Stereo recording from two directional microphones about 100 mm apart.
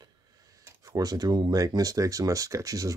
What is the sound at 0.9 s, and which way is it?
Speech, 40° right (ahead or behind).